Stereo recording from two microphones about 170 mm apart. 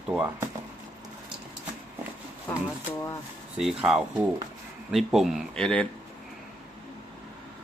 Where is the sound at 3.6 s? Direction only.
5° right (ahead or behind).